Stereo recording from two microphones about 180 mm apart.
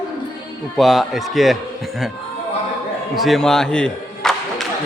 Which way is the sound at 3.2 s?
Centre (ahead or behind).